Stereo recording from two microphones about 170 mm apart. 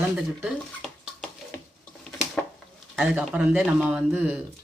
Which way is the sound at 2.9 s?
Centre (ahead or behind).